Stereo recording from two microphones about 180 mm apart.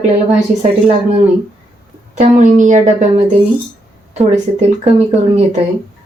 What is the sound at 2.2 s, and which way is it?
Speech, 40° right (ahead or behind).